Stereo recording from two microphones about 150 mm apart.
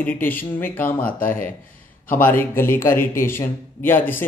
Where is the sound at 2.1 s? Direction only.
15° left (ahead or behind).